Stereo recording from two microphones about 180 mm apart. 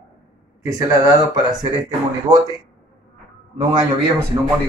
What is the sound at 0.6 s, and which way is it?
Speech, 20° right (ahead or behind).